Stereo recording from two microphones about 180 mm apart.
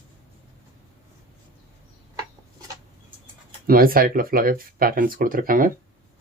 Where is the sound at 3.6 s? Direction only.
55° right (ahead or behind).